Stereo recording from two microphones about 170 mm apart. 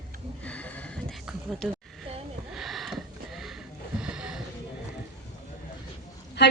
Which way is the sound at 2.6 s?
Centre (ahead or behind).